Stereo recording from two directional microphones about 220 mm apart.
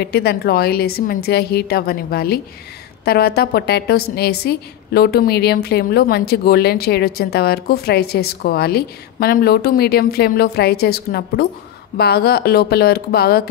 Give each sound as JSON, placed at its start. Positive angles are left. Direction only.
{"t": 0.0, "sound": "a woman's voice", "side_deg": 45}